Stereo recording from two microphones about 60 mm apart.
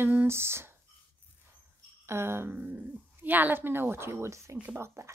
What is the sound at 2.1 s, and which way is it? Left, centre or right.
Speech, right.